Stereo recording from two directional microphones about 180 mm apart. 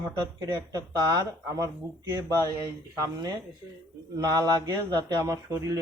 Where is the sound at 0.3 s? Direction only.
20° right (ahead or behind).